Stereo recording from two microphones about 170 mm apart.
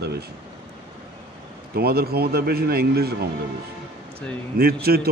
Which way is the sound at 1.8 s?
65° right (ahead or behind).